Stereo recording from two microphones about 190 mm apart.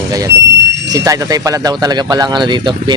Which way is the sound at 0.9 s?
20° right (ahead or behind).